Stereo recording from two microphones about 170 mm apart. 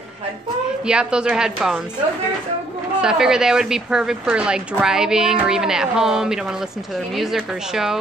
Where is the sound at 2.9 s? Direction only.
5° right (ahead or behind).